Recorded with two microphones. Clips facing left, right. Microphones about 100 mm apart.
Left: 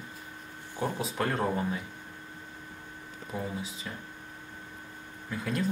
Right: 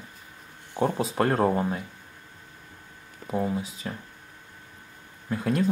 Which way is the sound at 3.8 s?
40° right (ahead or behind).